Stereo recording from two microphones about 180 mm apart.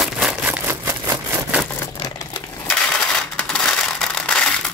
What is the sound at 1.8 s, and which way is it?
Crumpling, 20° left (ahead or behind).